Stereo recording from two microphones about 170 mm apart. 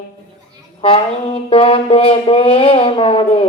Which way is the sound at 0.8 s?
35° left (ahead or behind).